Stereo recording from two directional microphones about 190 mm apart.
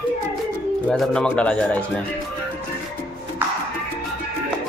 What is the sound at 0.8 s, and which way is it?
Speech, 5° left (ahead or behind).